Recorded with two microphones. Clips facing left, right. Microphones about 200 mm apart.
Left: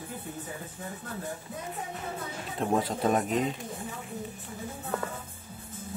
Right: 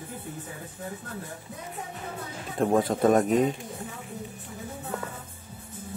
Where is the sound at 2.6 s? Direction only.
50° right (ahead or behind).